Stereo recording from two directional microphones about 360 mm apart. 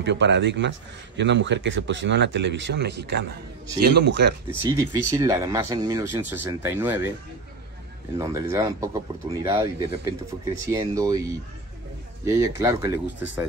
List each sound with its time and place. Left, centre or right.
0.0 s speech: right
5.1 s speech: centre
8.2 s speech: centre